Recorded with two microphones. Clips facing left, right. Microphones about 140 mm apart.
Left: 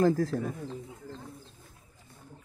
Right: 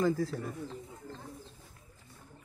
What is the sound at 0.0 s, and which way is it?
Speech, 50° left (ahead or behind).